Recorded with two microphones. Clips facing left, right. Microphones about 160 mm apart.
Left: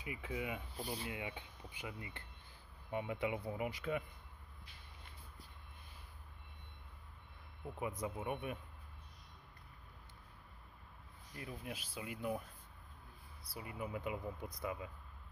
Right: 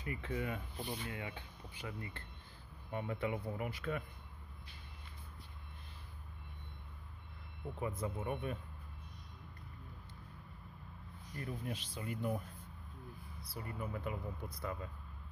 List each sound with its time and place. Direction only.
0.0 s speech: 10° left (ahead or behind)
1.0 s speech: 15° left (ahead or behind)
7.8 s speech: 15° left (ahead or behind)
11.3 s speech: 5° left (ahead or behind)
13.4 s speech: 10° left (ahead or behind)